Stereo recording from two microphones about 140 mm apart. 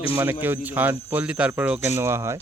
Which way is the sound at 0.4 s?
15° right (ahead or behind).